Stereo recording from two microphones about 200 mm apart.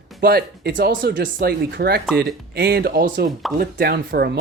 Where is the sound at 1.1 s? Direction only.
45° right (ahead or behind).